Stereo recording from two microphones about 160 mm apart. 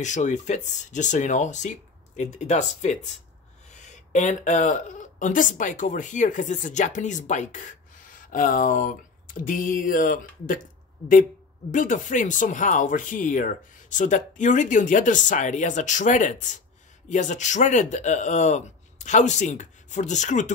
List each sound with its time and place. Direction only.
0.0 s speech: 50° left (ahead or behind)
11.7 s speech: 55° left (ahead or behind)